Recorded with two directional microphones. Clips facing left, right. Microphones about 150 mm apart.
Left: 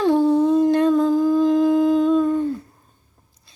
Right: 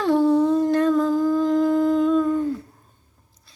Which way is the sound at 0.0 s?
15° left (ahead or behind).